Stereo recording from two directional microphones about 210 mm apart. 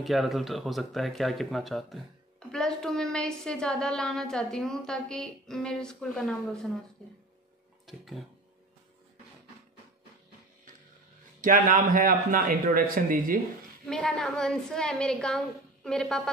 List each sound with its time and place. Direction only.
0.0 s a woman's voice: centre (ahead or behind)
7.8 s speech: centre (ahead or behind)
11.4 s a man's voice: 40° right (ahead or behind)
13.8 s a woman's voice: 5° left (ahead or behind)